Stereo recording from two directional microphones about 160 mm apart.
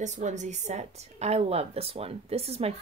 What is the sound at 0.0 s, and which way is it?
Speech, 50° right (ahead or behind).